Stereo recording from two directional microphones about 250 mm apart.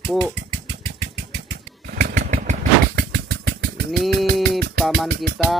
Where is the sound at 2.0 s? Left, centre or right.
Right.